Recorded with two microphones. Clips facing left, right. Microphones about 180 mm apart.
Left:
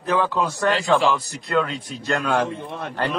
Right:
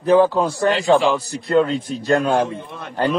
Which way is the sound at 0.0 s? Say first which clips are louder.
Right 7 dB; 30° right (ahead or behind).